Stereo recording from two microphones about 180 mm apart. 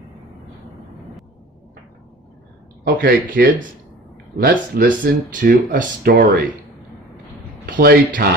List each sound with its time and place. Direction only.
2.8 s speech: 55° right (ahead or behind)
7.6 s speech: 50° right (ahead or behind)